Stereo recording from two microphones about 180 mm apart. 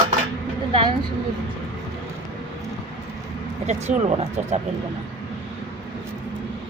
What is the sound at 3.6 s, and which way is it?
Speech, 40° right (ahead or behind).